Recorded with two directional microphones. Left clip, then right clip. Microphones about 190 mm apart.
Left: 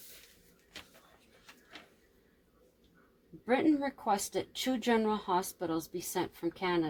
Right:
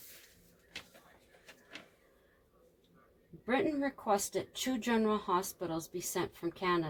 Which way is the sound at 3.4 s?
35° left (ahead or behind).